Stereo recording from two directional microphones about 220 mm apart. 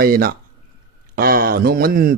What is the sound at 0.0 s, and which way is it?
A man's voice, 40° right (ahead or behind).